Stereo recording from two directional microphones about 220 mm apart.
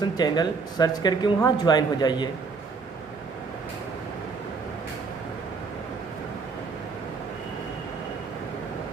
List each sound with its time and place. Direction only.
0.2 s speech: 20° left (ahead or behind)